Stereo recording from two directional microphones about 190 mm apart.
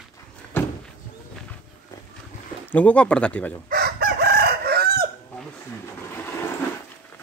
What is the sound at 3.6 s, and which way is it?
Chicken, 50° right (ahead or behind).